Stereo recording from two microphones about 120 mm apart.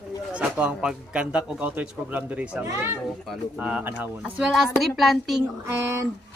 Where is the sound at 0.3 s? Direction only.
10° right (ahead or behind).